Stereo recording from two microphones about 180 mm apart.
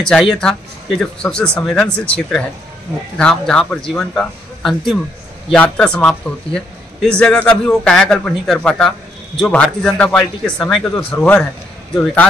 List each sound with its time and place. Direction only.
0.0 s a man's voice: 5° left (ahead or behind)